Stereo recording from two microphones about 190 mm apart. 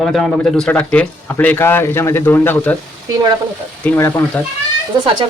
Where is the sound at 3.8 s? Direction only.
10° left (ahead or behind).